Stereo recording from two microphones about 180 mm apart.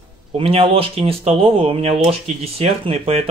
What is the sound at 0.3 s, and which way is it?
Speech, 35° right (ahead or behind).